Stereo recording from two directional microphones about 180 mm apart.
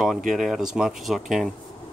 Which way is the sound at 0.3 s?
Centre (ahead or behind).